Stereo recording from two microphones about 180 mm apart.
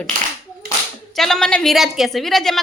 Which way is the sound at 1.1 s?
Centre (ahead or behind).